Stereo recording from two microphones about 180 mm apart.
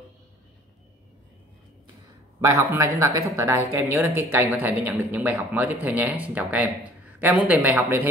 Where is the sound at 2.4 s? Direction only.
15° right (ahead or behind).